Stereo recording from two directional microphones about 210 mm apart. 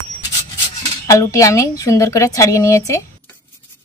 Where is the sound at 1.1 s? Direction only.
15° left (ahead or behind).